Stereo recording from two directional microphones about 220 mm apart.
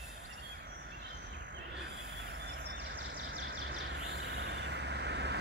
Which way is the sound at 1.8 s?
50° right (ahead or behind).